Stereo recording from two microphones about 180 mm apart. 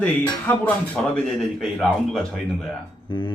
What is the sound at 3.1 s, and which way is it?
Speech, 25° left (ahead or behind).